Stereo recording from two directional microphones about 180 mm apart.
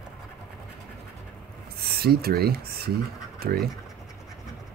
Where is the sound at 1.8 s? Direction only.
60° right (ahead or behind).